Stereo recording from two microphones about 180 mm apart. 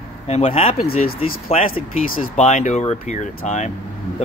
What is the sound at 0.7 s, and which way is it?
Speech, 55° left (ahead or behind).